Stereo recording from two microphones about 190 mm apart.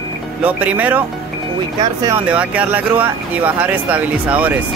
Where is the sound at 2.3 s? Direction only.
5° right (ahead or behind).